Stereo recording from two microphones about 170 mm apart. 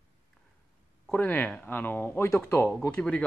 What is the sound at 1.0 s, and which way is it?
Speech, 10° left (ahead or behind).